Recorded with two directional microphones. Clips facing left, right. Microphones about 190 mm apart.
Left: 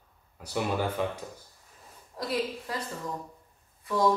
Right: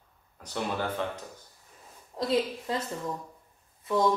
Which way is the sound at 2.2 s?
25° right (ahead or behind).